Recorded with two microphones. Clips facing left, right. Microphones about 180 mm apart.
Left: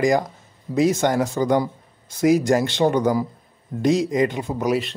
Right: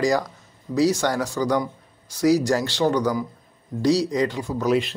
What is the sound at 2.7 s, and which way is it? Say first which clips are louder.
Speech: left 2 dB; 20° left (ahead or behind).